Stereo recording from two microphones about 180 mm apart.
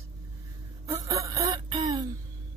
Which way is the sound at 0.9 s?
20° right (ahead or behind).